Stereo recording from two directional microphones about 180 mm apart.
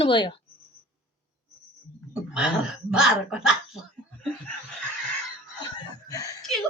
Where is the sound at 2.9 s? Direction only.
5° right (ahead or behind).